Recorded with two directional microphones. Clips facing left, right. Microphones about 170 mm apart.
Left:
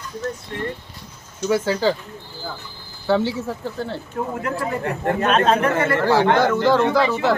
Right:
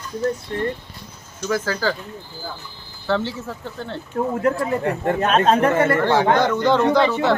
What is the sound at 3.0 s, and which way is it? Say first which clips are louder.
Speech: left 3 dB; 10° left (ahead or behind).